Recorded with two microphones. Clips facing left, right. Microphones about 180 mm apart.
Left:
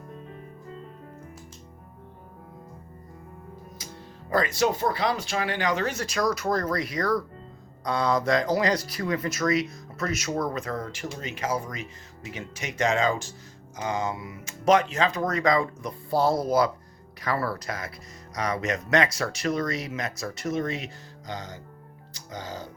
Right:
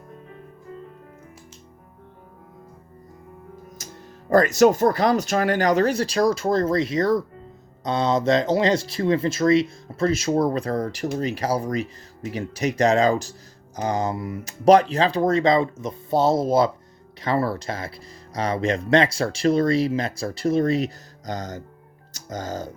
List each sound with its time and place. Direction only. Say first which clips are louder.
3.8 s music: right 1 dB; 45° right (ahead or behind)
4.3 s speech: right 8 dB; 45° right (ahead or behind)